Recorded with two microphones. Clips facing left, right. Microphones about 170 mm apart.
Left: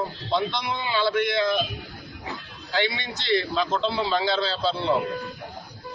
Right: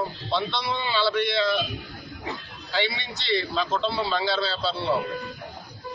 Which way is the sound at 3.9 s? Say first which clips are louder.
Left 2 dB; 15° left (ahead or behind).